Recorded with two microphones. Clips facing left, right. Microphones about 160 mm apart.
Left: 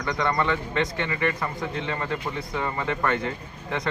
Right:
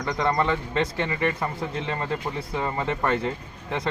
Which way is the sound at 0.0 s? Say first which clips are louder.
Right 1 dB; 25° right (ahead or behind).